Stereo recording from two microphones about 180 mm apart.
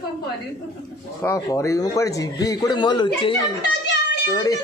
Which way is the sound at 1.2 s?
15° left (ahead or behind).